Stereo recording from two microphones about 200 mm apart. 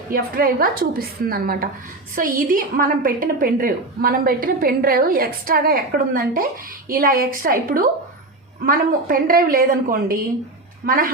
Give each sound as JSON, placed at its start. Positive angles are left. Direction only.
{"t": 0.1, "sound": "a woman's voice", "side_deg": -45}